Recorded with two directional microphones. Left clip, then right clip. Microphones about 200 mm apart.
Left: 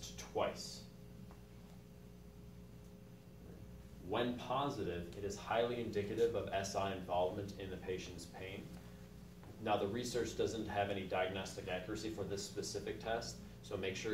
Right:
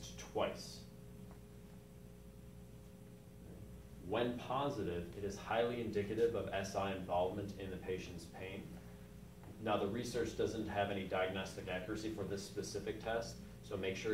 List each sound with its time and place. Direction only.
0.3 s a man's voice: 10° left (ahead or behind)
4.1 s a man's voice: 10° left (ahead or behind)
9.7 s a man's voice: 10° left (ahead or behind)